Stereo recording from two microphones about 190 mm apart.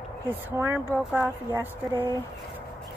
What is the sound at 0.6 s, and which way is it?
Speech, 10° right (ahead or behind).